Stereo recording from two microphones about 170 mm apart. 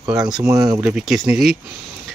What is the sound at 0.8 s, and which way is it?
Speech, 5° right (ahead or behind).